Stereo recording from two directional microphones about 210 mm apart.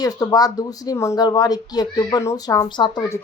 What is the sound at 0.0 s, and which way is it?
A woman's voice, 20° left (ahead or behind).